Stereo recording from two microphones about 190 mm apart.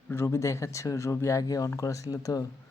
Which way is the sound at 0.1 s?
15° left (ahead or behind).